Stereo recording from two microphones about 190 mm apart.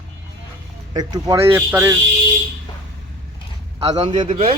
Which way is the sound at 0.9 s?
20° right (ahead or behind).